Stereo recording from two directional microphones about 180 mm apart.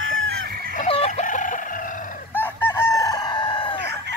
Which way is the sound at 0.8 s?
35° left (ahead or behind).